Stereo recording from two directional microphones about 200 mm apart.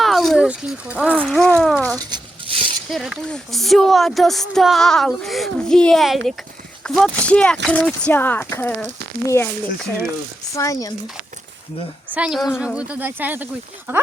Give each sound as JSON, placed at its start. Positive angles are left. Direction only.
{"t": 0.0, "sound": "speech", "side_deg": 0}
{"t": 1.2, "sound": "a woman's voice", "side_deg": 5}
{"t": 2.0, "sound": "a sound", "side_deg": -20}
{"t": 2.9, "sound": "a woman's voice", "side_deg": 0}
{"t": 10.5, "sound": "speech", "side_deg": 15}
{"t": 12.1, "sound": "speech", "side_deg": -5}